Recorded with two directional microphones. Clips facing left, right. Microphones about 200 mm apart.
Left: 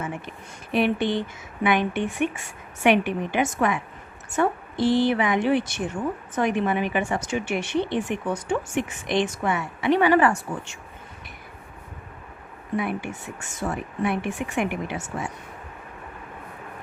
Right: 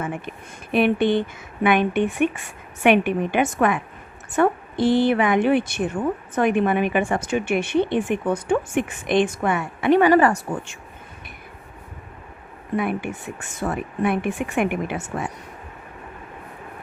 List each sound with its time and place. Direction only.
0.7 s speech: 55° right (ahead or behind); by 10.8 s 40° right (ahead or behind)
12.7 s speech: 55° right (ahead or behind)